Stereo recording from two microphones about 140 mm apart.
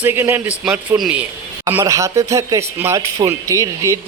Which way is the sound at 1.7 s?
20° right (ahead or behind).